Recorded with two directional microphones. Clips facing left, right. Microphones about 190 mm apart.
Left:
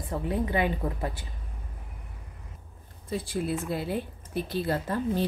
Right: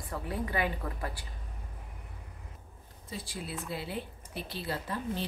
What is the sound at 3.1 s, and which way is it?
A woman's voice, 50° left (ahead or behind).